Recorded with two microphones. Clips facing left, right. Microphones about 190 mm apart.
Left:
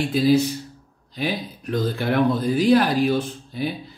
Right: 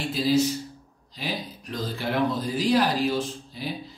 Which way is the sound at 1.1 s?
55° left (ahead or behind).